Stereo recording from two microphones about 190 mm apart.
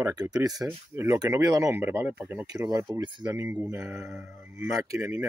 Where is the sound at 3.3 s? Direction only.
10° right (ahead or behind).